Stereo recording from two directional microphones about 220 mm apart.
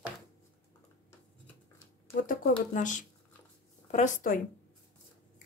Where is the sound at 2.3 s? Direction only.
35° left (ahead or behind).